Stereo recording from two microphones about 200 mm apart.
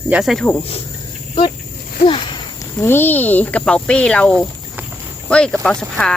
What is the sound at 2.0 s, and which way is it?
Walk, 25° left (ahead or behind).